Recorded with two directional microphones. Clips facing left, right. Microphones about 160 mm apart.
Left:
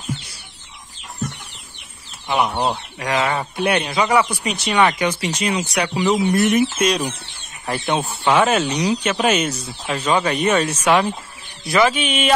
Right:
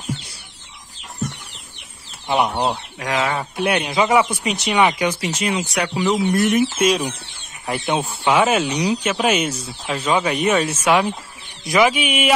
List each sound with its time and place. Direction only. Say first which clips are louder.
2.2 s speech: right 1 dB; 25° right (ahead or behind)
2.7 s speech: left 1 dB; centre (ahead or behind)
3.8 s speech: right 1 dB; 20° right (ahead or behind)